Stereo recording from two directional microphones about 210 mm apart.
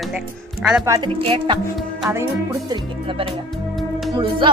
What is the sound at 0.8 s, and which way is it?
Speech, 15° right (ahead or behind).